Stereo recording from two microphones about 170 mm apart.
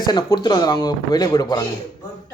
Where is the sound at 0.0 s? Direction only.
25° left (ahead or behind).